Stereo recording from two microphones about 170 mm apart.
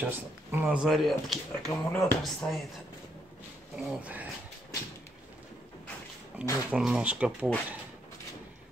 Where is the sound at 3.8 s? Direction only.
5° right (ahead or behind).